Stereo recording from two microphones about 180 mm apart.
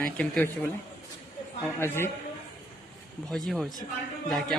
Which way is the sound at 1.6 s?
15° left (ahead or behind).